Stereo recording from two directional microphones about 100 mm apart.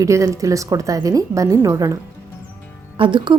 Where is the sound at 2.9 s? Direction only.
55° right (ahead or behind).